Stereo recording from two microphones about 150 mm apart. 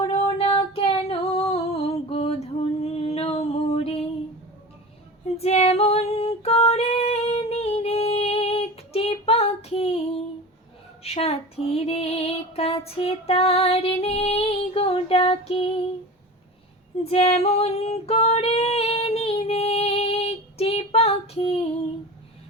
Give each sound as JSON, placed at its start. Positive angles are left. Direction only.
{"t": 0.0, "sound": "female singing", "side_deg": 40}
{"t": 2.8, "sound": "music", "side_deg": 40}
{"t": 5.4, "sound": "female singing", "side_deg": 45}
{"t": 11.0, "sound": "female singing", "side_deg": 40}
{"t": 17.0, "sound": "female singing", "side_deg": 45}